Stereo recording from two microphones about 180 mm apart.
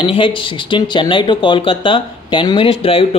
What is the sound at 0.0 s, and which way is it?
Speech, 30° left (ahead or behind).